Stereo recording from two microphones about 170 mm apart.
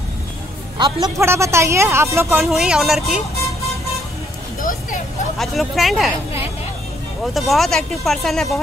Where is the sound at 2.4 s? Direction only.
5° right (ahead or behind).